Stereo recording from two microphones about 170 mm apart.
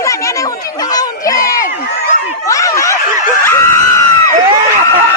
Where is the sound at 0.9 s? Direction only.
20° left (ahead or behind).